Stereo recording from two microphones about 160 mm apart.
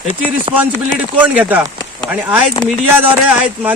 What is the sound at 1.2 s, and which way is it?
Speech, 10° right (ahead or behind).